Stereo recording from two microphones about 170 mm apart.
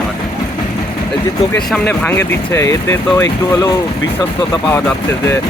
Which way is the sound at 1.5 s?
10° left (ahead or behind).